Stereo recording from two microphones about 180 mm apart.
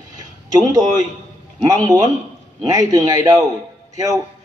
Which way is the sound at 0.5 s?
20° right (ahead or behind).